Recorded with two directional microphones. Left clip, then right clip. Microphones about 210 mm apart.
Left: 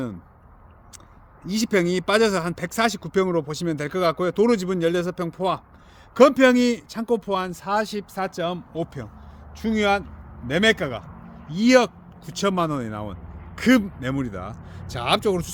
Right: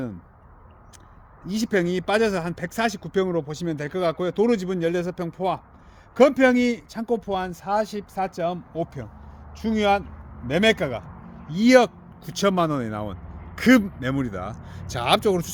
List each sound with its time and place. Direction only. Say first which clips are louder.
1.5 s speech: left 2 dB; 20° left (ahead or behind)
10.4 s speech: even; 5° right (ahead or behind)